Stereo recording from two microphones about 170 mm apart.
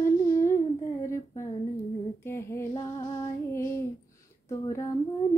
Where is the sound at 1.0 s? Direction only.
15° left (ahead or behind).